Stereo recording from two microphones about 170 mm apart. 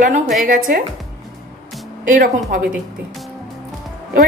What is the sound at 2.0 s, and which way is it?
Speech, 50° right (ahead or behind).